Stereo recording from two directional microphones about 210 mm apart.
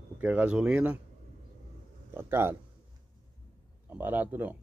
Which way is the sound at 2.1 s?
10° right (ahead or behind).